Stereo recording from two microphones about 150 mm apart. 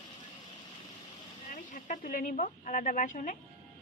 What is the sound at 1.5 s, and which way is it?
Speech, 60° left (ahead or behind).